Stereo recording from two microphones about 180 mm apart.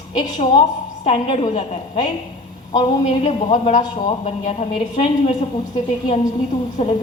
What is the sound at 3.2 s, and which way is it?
A woman's voice, 40° left (ahead or behind).